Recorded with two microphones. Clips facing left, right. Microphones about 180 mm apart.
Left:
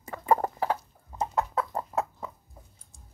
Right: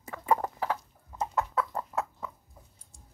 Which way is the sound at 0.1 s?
40° left (ahead or behind).